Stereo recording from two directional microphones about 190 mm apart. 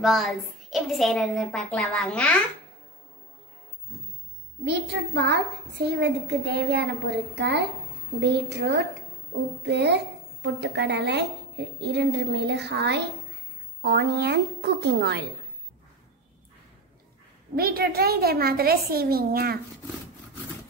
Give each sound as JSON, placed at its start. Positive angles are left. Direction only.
{"t": 0.0, "sound": "a woman's voice", "side_deg": 0}
{"t": 4.6, "sound": "a woman's voice", "side_deg": -65}
{"t": 17.6, "sound": "a child's voice", "side_deg": -55}